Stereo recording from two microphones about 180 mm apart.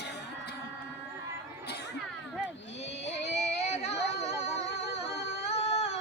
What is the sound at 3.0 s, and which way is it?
Music, 75° left (ahead or behind).